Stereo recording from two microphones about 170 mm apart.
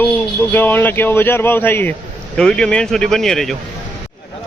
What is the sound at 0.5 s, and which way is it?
A man's voice, 10° left (ahead or behind).